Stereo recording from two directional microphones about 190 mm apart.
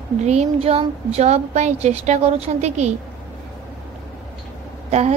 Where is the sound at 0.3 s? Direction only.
35° right (ahead or behind).